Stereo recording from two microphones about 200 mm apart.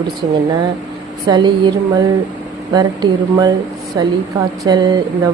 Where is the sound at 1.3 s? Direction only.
25° right (ahead or behind).